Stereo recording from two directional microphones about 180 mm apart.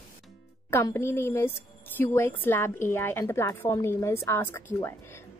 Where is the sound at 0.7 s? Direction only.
15° left (ahead or behind).